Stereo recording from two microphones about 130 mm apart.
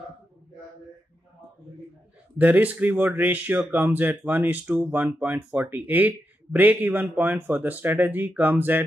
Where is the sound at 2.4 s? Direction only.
10° right (ahead or behind).